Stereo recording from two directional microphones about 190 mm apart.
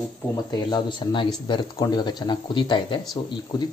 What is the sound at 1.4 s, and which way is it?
Speech, 25° left (ahead or behind).